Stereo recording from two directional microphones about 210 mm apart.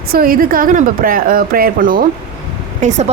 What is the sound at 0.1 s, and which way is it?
A woman's voice, 45° right (ahead or behind).